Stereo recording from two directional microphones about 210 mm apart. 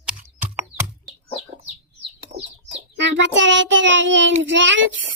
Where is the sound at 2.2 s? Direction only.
55° right (ahead or behind).